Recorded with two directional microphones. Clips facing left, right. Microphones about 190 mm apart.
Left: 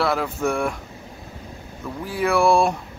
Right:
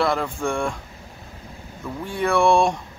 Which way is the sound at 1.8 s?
5° left (ahead or behind).